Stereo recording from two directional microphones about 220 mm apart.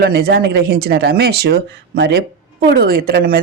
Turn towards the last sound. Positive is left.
turn(degrees=-40)  # may be behind; listen again after turning